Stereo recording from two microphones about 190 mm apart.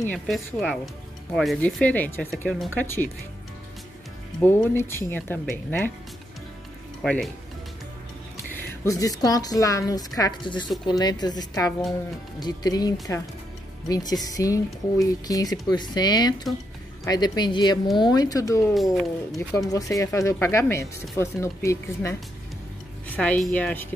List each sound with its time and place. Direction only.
0.1 s a woman's voice: 5° left (ahead or behind)
4.4 s speech: 10° left (ahead or behind)
7.0 s speech: centre (ahead or behind)
8.5 s speech: 15° left (ahead or behind)
18.7 s a woman's voice: centre (ahead or behind)
19.7 s speech: 15° left (ahead or behind)
23.1 s speech: 5° left (ahead or behind)